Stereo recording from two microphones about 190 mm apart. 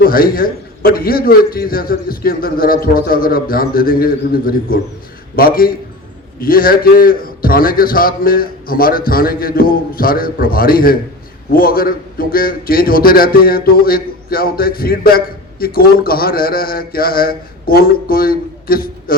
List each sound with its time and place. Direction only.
0.0 s a man's voice: 50° left (ahead or behind)